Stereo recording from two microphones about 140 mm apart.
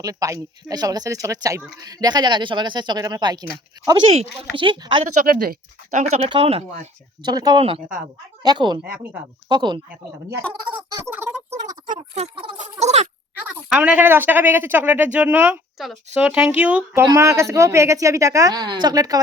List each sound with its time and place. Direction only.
0.0 s a woman's voice: 25° right (ahead or behind)
5.2 s speech: 90° right; by 6.8 s 45° right (ahead or behind)
7.2 s a woman's voice: 30° right (ahead or behind)
11.0 s a sound: 15° right (ahead or behind)
11.9 s speech: 45° right (ahead or behind)
12.8 s a sound: 50° right (ahead or behind)
13.3 s a woman's voice: 10° right (ahead or behind); by 19.2 s 25° right (ahead or behind)